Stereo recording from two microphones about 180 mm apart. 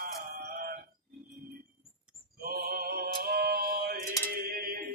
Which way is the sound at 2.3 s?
55° right (ahead or behind).